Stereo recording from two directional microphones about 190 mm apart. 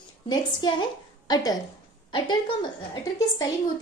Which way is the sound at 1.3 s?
20° left (ahead or behind).